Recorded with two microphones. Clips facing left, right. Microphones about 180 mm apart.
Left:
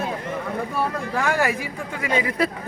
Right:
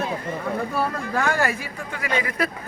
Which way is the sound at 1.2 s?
10° left (ahead or behind).